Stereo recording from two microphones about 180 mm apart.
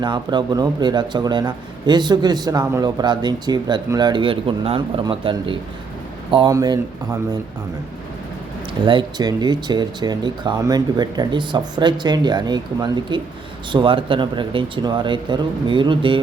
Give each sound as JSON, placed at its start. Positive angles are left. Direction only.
{"t": 0.0, "sound": "speech", "side_deg": -25}
{"t": 8.9, "sound": "speech", "side_deg": -25}